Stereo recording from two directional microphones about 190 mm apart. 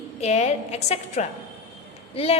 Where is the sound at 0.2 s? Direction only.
35° left (ahead or behind).